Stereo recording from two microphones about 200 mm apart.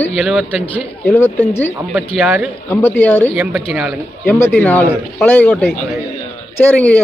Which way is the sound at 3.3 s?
10° right (ahead or behind).